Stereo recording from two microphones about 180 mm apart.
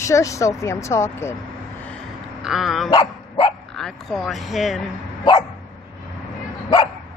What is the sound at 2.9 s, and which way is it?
Dog, 30° left (ahead or behind).